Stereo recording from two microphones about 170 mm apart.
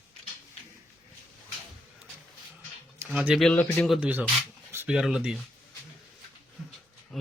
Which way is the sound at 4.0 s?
10° right (ahead or behind).